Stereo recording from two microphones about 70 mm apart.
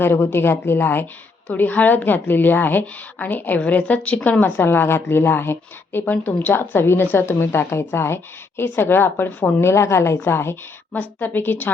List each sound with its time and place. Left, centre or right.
0.0 s a woman's voice: left